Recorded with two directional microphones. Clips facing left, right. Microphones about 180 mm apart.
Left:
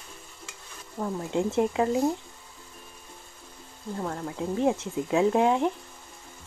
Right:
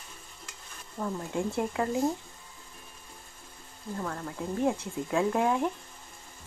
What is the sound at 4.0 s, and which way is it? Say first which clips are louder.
Speech: left 4 dB; 20° left (ahead or behind).